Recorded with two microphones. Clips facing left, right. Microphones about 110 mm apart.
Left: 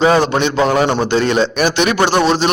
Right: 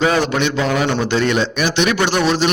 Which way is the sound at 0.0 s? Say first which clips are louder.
Left 4 dB; 30° left (ahead or behind).